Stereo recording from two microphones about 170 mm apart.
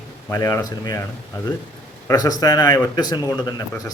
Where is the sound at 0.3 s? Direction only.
20° left (ahead or behind).